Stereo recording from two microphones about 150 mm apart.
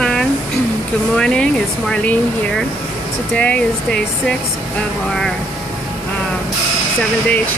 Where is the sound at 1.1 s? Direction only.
5° left (ahead or behind).